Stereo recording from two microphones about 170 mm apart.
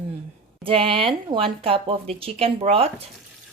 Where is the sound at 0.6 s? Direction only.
30° right (ahead or behind).